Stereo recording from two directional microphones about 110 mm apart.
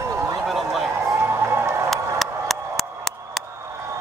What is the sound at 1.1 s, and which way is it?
Run, 20° right (ahead or behind).